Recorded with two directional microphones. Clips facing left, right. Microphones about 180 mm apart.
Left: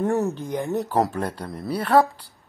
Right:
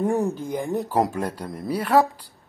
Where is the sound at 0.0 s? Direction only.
10° right (ahead or behind).